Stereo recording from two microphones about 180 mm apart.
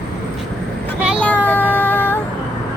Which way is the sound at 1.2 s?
10° left (ahead or behind).